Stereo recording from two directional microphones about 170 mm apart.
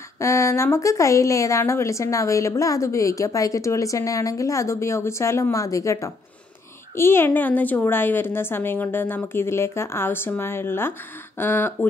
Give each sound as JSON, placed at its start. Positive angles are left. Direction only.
{"t": 0.2, "sound": "speech", "side_deg": 15}